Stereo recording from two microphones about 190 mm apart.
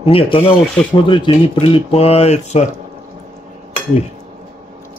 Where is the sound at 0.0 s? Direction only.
30° left (ahead or behind).